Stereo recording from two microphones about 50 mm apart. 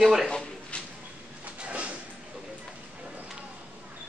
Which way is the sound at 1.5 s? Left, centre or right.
Right.